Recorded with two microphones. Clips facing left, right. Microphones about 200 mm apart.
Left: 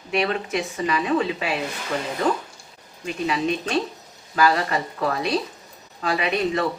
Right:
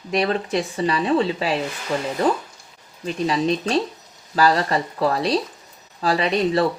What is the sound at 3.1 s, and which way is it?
Speech, 35° right (ahead or behind).